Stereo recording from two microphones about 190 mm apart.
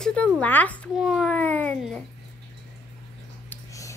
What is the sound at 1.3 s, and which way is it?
Speech, 10° left (ahead or behind).